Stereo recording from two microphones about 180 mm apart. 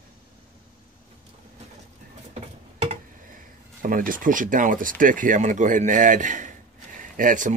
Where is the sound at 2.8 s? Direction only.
50° right (ahead or behind).